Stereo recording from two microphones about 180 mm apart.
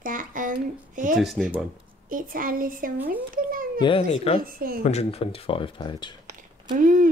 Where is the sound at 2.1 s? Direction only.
50° right (ahead or behind).